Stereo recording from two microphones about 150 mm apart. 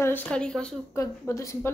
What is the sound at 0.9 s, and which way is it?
Speech, 20° left (ahead or behind).